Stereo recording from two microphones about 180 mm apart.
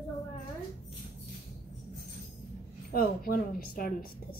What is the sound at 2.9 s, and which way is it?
A woman's voice, 55° left (ahead or behind).